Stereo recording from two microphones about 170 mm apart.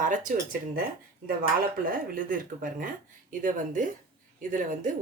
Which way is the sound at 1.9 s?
55° right (ahead or behind).